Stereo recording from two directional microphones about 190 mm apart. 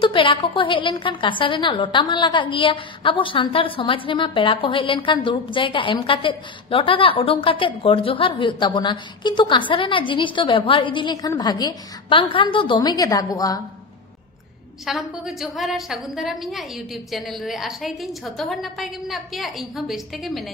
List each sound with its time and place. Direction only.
0.0 s a woman's voice: 25° left (ahead or behind)
14.9 s a woman's voice: centre (ahead or behind)